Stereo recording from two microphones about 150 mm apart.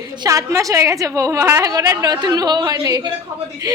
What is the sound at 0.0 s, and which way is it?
A woman's voice, 25° right (ahead or behind).